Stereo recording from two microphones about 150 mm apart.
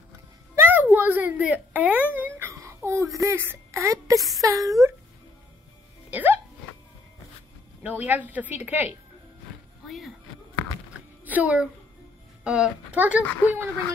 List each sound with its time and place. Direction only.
0.6 s a sound: 10° right (ahead or behind)
2.5 s speech: 20° right (ahead or behind)
6.0 s music: 10° right (ahead or behind)
7.8 s a woman's voice: 10° right (ahead or behind)
9.8 s speech: centre (ahead or behind)
11.2 s a woman's voice: 10° right (ahead or behind)
13.2 s speech: 10° left (ahead or behind)